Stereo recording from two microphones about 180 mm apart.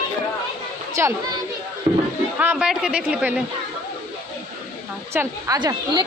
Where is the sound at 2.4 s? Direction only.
5° right (ahead or behind).